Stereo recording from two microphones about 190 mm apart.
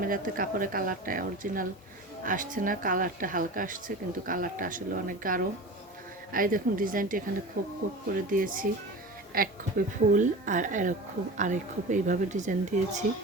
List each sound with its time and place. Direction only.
0.0 s a woman's voice: 45° right (ahead or behind)